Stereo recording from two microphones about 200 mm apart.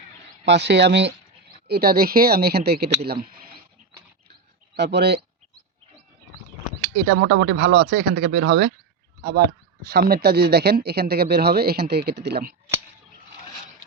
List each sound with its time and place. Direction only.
0.4 s speech: 60° right (ahead or behind)
4.7 s speech: 55° right (ahead or behind)
6.9 s speech: 75° right (ahead or behind); by 8.7 s 55° right (ahead or behind)
9.8 s speech: 50° right (ahead or behind)